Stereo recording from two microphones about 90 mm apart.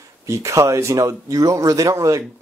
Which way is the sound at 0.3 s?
35° right (ahead or behind).